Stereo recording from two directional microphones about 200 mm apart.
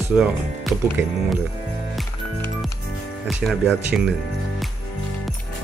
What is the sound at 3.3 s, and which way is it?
Speech, centre (ahead or behind).